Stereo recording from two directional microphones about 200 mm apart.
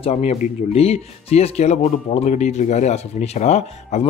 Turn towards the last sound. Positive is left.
turn(degrees=35)  # may be behind; listen again after turning